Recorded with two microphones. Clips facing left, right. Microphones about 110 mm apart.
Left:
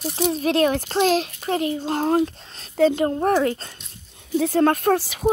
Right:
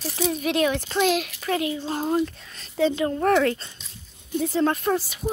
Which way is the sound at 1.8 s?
55° left (ahead or behind).